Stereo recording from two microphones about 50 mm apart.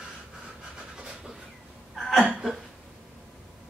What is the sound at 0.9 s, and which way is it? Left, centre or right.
Pant, centre.